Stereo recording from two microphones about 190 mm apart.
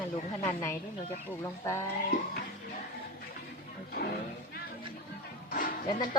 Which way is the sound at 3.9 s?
55° left (ahead or behind).